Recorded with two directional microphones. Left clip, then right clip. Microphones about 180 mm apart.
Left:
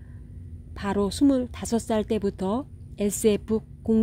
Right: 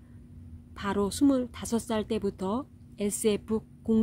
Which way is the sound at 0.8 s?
20° left (ahead or behind).